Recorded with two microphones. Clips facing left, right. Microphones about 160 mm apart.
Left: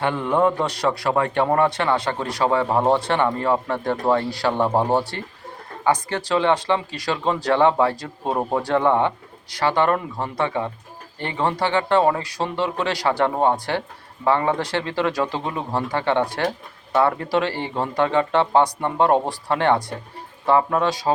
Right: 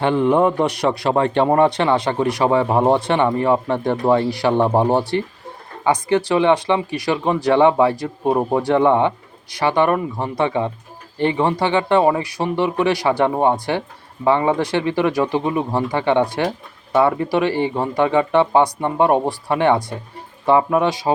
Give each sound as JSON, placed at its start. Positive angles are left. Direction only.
{"t": 0.0, "sound": "speech", "side_deg": -20}